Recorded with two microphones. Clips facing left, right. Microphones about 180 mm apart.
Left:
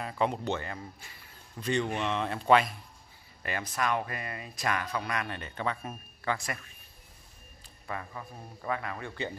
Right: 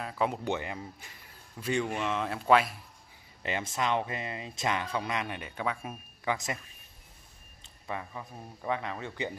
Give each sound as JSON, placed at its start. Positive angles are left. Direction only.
{"t": 0.0, "sound": "speech", "side_deg": 0}
{"t": 0.5, "sound": "a man's voice", "side_deg": -15}
{"t": 3.4, "sound": "speech", "side_deg": -20}
{"t": 7.8, "sound": "a man's voice", "side_deg": -15}